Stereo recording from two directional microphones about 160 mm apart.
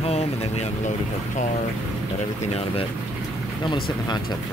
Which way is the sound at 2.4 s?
40° left (ahead or behind).